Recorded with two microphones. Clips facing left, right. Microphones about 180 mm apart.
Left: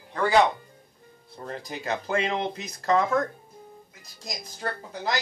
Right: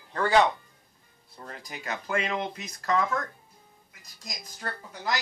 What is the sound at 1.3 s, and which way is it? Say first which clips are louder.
Speech: left 6 dB; 25° left (ahead or behind).